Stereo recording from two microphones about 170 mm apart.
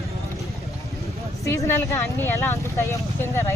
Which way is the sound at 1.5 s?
15° left (ahead or behind).